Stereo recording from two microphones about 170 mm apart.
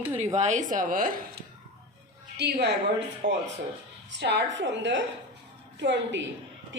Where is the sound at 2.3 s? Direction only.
80° right.